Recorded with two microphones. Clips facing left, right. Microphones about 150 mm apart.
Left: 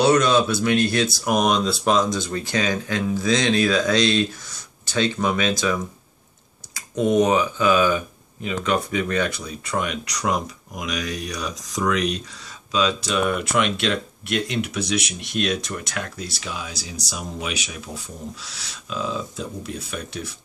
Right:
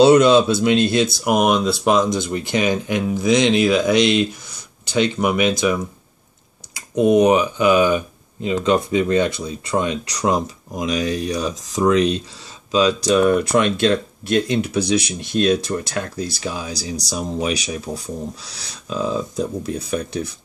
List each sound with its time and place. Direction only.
0.0 s speech: 25° right (ahead or behind)
1.4 s speech: 5° right (ahead or behind)
1.9 s speech: 15° right (ahead or behind)
7.0 s speech: 20° right (ahead or behind); by 20.2 s 40° right (ahead or behind)